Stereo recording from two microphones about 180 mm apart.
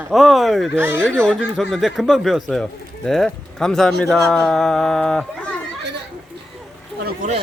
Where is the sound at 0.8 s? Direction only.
10° right (ahead or behind).